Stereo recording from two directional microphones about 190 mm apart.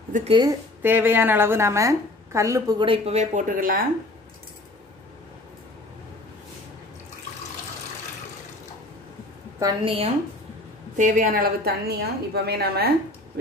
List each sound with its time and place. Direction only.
0.1 s a woman's voice: 35° right (ahead or behind)
0.4 s a woman's voice: 15° right (ahead or behind)
2.9 s a woman's voice: 35° right (ahead or behind)
9.6 s a woman's voice: 25° right (ahead or behind)
11.0 s a woman's voice: 40° right (ahead or behind)